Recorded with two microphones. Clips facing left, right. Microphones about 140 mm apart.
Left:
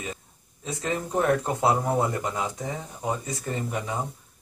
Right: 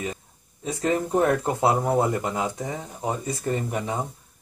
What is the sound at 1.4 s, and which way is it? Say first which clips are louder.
Speech: right 2 dB; 25° right (ahead or behind).